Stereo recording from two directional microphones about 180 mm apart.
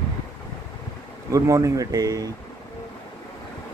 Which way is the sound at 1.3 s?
20° right (ahead or behind).